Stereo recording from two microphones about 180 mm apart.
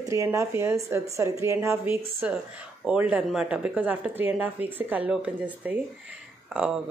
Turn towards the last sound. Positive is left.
turn(degrees=-5)  # may be behind; listen again after turning